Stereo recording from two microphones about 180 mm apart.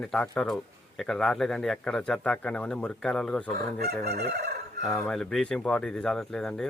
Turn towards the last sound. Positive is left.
turn(degrees=5)  # may be behind; listen again after turning